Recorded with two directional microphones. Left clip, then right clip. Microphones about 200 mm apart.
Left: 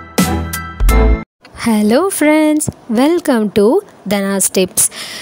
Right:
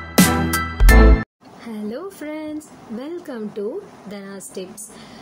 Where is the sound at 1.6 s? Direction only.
55° left (ahead or behind).